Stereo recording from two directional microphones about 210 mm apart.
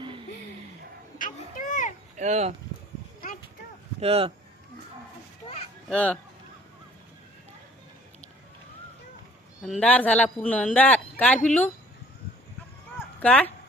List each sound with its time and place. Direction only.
1.2 s a sound: 40° left (ahead or behind)
2.1 s speech: 35° right (ahead or behind)
4.0 s speech: 30° right (ahead or behind)
5.9 s speech: 5° left (ahead or behind)
9.6 s speech: 5° left (ahead or behind)
13.1 s speech: 5° left (ahead or behind)